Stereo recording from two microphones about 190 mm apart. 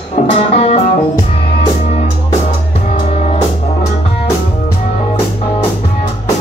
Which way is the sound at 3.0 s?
35° left (ahead or behind).